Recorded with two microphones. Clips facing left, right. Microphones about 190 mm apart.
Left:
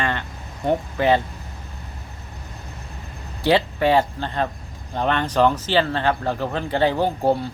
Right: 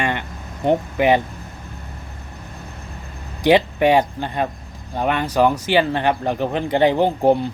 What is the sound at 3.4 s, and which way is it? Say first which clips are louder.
Speech: right 4 dB; 15° right (ahead or behind).